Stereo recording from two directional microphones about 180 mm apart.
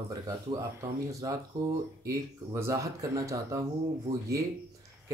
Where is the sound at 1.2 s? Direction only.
20° right (ahead or behind).